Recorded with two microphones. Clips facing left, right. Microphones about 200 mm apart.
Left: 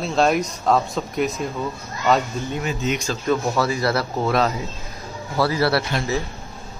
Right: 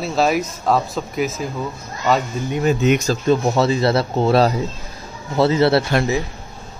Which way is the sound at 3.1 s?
25° right (ahead or behind).